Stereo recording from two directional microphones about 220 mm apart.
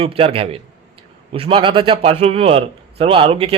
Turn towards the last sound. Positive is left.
turn(degrees=-30)  # may be behind; listen again after turning